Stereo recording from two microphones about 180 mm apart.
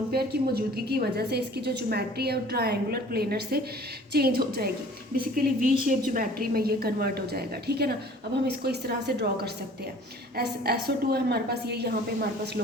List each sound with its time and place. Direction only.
0.1 s a woman's voice: 60° right (ahead or behind)